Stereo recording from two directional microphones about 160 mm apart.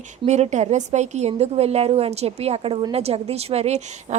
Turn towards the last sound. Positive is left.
turn(degrees=-40)  # may be behind; listen again after turning